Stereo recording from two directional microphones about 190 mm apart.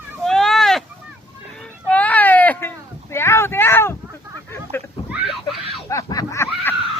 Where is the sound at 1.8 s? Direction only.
5° left (ahead or behind).